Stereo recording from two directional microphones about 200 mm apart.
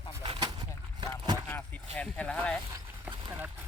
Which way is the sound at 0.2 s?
25° right (ahead or behind).